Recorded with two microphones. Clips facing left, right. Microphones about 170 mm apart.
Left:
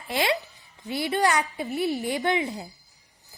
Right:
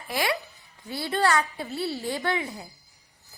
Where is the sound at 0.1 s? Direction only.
25° left (ahead or behind).